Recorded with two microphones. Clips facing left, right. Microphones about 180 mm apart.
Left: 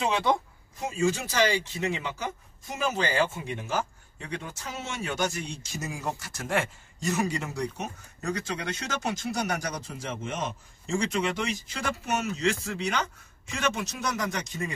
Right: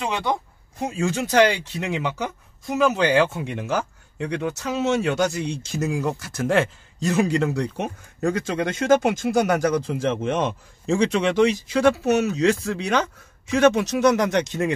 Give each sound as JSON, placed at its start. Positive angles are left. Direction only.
{"t": 0.0, "sound": "speech", "side_deg": 0}
{"t": 0.7, "sound": "speech", "side_deg": -65}
{"t": 8.5, "sound": "speech", "side_deg": -50}
{"t": 13.7, "sound": "speech", "side_deg": -75}